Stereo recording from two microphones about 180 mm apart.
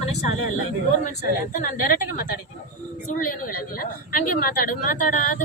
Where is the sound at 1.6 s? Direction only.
50° left (ahead or behind).